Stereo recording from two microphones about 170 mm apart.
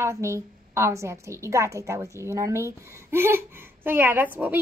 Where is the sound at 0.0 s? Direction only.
15° right (ahead or behind).